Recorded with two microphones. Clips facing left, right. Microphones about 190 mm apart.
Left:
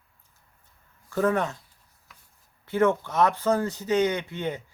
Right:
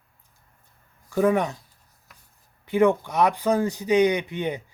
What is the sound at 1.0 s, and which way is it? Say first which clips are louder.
Speech: right 3 dB; 15° right (ahead or behind).